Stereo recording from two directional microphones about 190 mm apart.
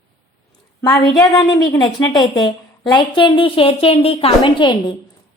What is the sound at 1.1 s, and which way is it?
A woman's voice, 20° left (ahead or behind).